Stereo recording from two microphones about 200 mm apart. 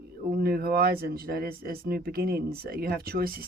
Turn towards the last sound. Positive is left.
turn(degrees=-50)  # may be behind; listen again after turning